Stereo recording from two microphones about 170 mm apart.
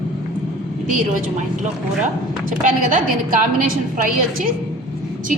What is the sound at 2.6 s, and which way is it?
A woman's voice, 50° right (ahead or behind).